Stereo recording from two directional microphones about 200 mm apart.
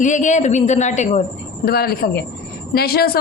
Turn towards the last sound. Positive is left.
turn(degrees=50)  # may be behind; listen again after turning